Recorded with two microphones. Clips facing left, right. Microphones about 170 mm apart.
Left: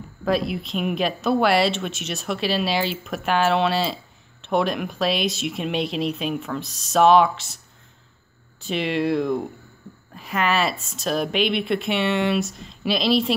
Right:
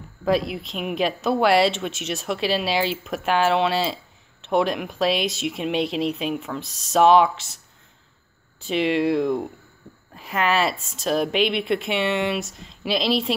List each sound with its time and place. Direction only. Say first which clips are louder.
0.2 s speech: right 1 dB; 20° right (ahead or behind)
8.6 s speech: right 2 dB; 20° right (ahead or behind)